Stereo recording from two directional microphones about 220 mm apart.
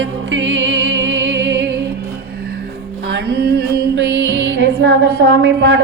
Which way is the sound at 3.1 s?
45° right (ahead or behind).